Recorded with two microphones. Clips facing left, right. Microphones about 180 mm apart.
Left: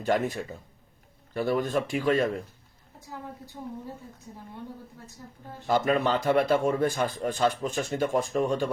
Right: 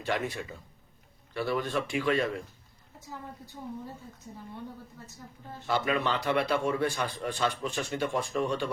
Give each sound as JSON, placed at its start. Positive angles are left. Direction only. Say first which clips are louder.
{"t": 0.0, "sound": "a man's voice", "louder": "left 5 dB", "side_deg": 45}
{"t": 5.6, "sound": "a man's voice", "louder": "left 4 dB", "side_deg": 45}